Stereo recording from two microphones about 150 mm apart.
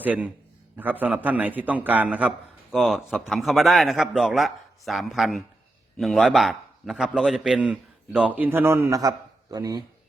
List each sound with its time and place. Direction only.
0.0 s a man's voice: 10° right (ahead or behind)